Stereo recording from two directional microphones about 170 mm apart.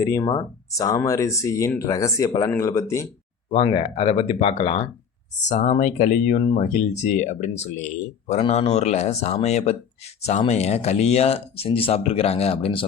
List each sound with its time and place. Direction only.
0.0 s speech: 20° left (ahead or behind)
3.5 s speech: 35° left (ahead or behind)